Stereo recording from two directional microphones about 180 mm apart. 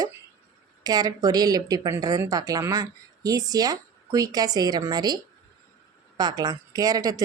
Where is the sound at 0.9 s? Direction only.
20° right (ahead or behind).